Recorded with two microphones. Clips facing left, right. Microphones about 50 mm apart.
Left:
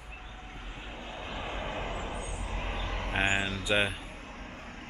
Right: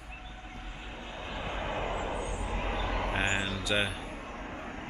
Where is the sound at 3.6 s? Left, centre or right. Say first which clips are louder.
Left 3 dB; centre.